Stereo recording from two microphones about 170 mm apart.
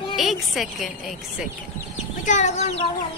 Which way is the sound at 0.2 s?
Centre (ahead or behind).